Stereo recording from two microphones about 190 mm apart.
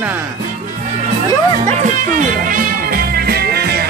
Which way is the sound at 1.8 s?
45° right (ahead or behind).